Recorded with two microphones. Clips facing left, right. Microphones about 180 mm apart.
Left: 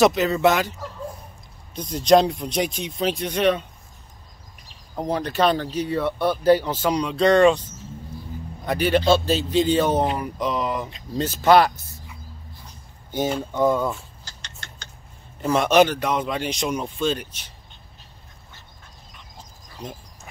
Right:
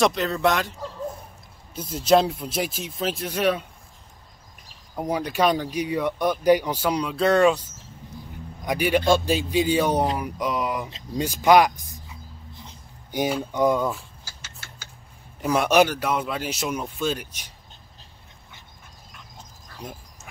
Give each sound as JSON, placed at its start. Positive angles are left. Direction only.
{"t": 0.0, "sound": "speech", "side_deg": 0}
{"t": 1.8, "sound": "speech", "side_deg": -5}
{"t": 4.9, "sound": "speech", "side_deg": -10}
{"t": 12.1, "sound": "dog", "side_deg": -20}
{"t": 13.5, "sound": "speech", "side_deg": -15}
{"t": 13.8, "sound": "a sound", "side_deg": -5}
{"t": 15.4, "sound": "speech", "side_deg": -10}